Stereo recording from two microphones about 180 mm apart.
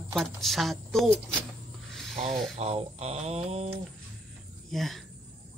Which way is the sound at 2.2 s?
35° right (ahead or behind).